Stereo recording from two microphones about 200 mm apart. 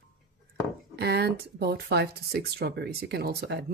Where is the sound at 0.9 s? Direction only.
55° right (ahead or behind).